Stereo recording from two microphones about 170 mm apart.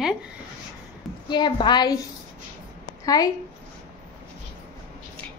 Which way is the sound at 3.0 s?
20° left (ahead or behind).